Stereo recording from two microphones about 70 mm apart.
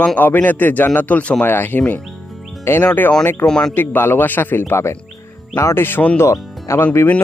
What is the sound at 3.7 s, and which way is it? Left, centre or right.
Speech, left.